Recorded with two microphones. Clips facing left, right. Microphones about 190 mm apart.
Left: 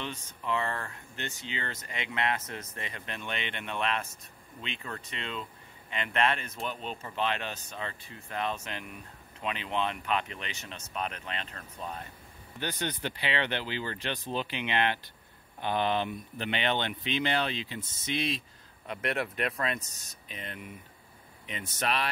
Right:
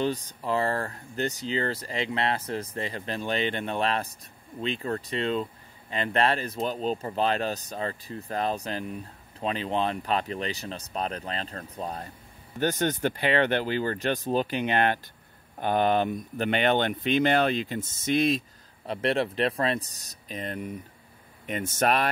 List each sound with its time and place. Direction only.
0.0 s speech: 35° right (ahead or behind)
18.9 s speech: 30° right (ahead or behind); by 22.1 s 50° right (ahead or behind)